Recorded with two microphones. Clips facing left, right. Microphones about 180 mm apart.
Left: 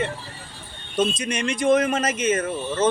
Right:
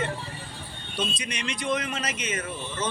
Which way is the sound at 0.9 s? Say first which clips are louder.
Left 9 dB; 45° left (ahead or behind).